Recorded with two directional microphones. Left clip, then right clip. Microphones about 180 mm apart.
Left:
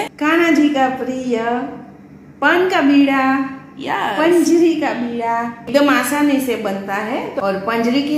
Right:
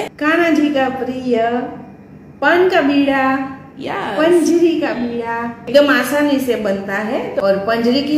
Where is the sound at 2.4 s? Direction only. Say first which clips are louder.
Right 1 dB; 30° left (ahead or behind).